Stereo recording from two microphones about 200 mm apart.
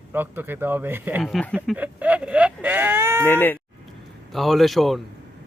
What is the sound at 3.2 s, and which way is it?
Speech, 10° left (ahead or behind).